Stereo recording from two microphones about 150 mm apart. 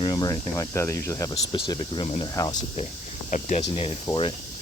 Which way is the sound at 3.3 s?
55° left (ahead or behind).